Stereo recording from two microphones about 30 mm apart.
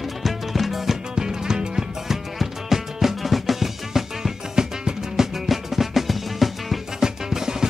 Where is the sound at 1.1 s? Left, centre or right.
Right.